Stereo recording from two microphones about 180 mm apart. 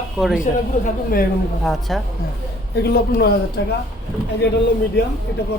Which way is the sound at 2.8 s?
60° left (ahead or behind).